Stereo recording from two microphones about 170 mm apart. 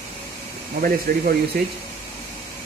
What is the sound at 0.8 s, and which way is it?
Speech, 60° right (ahead or behind).